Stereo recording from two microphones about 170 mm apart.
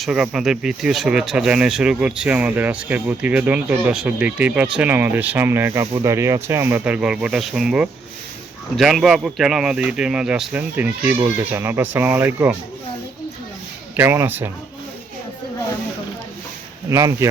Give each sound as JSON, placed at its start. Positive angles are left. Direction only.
{"t": 0.0, "sound": "speech", "side_deg": -5}
{"t": 13.9, "sound": "speech", "side_deg": -15}
{"t": 16.9, "sound": "speech", "side_deg": -20}